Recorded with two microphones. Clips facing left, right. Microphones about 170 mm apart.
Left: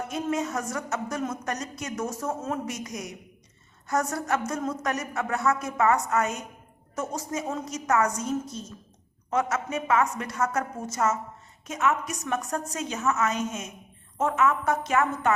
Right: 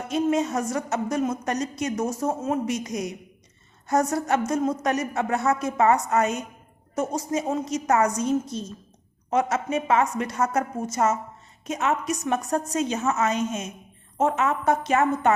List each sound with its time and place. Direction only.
0.1 s a woman's voice: 25° right (ahead or behind)